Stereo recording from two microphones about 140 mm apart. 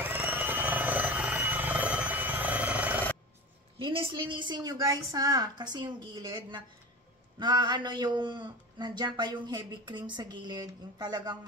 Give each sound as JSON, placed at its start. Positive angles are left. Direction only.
{"t": 0.0, "sound": "helicopter", "side_deg": -15}
{"t": 3.7, "sound": "a man's voice", "side_deg": -40}